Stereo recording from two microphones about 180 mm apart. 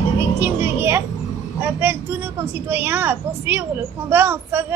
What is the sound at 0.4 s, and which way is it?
Music, 15° right (ahead or behind).